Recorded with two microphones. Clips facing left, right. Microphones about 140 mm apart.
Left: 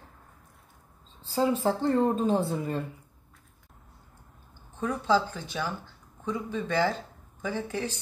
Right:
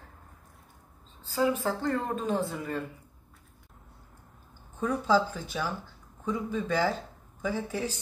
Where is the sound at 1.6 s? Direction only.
30° left (ahead or behind).